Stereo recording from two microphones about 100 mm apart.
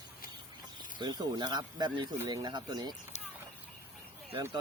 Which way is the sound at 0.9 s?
45° right (ahead or behind).